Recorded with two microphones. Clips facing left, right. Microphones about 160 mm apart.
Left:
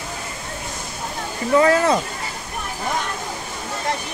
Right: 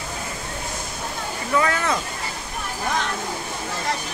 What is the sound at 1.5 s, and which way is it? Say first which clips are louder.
Speech: left 7 dB; 30° left (ahead or behind).